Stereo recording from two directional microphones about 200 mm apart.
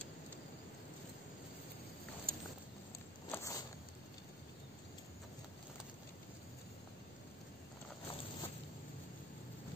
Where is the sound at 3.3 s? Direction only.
15° left (ahead or behind).